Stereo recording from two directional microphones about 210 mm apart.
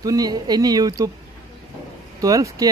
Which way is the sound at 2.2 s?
15° right (ahead or behind).